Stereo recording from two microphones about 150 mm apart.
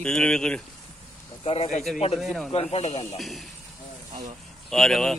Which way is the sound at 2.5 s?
45° left (ahead or behind).